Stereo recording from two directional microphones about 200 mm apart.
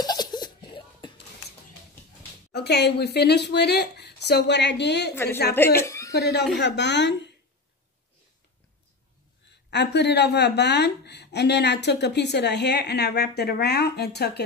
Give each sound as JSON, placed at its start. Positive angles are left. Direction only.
{"t": 0.0, "sound": "laughter", "side_deg": 20}
{"t": 2.5, "sound": "a woman's voice", "side_deg": 55}
{"t": 5.1, "sound": "a woman's voice", "side_deg": 10}
{"t": 5.8, "sound": "a sound", "side_deg": 15}
{"t": 6.1, "sound": "a woman's voice", "side_deg": 55}
{"t": 9.7, "sound": "a woman's voice", "side_deg": 60}